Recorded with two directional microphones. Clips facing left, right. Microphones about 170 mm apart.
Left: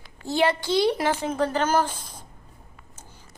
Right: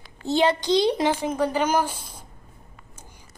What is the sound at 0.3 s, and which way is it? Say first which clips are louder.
A child's voice: right 2 dB; 20° right (ahead or behind).